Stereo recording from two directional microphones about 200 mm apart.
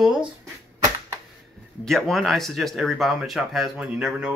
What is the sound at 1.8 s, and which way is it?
Speech, centre (ahead or behind).